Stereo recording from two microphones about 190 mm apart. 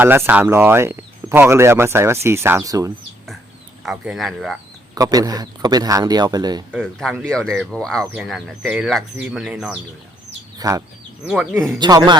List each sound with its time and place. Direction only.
0.0 s speech: 10° right (ahead or behind)
3.8 s speech: centre (ahead or behind)
4.9 s a man's voice: 20° right (ahead or behind)
6.7 s speech: 5° right (ahead or behind)
10.6 s a man's voice: 20° right (ahead or behind)